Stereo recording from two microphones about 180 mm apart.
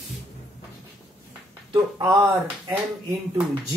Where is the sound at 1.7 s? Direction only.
20° right (ahead or behind).